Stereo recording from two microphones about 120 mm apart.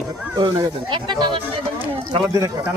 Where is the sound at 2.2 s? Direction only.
30° right (ahead or behind).